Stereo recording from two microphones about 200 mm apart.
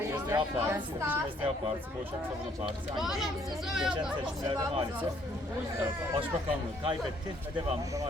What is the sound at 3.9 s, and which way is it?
Speech, 25° right (ahead or behind).